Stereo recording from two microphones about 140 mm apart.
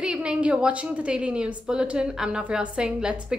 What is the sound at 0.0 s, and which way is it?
A woman's voice, 5° right (ahead or behind).